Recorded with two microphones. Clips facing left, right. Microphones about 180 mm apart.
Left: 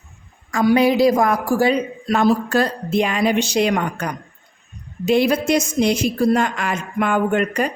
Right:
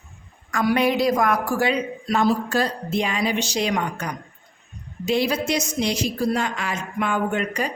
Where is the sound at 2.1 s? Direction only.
60° left (ahead or behind).